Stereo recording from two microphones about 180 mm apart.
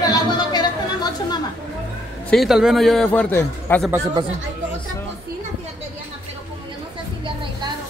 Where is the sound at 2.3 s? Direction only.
Centre (ahead or behind).